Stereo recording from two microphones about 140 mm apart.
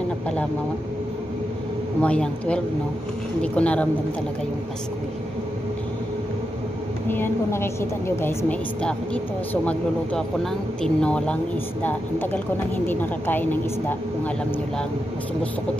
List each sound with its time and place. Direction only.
2.0 s speech: 10° left (ahead or behind)
7.1 s speech: 15° left (ahead or behind)